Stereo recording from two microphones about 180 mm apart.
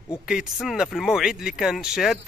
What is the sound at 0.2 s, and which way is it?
A man's voice, 5° right (ahead or behind).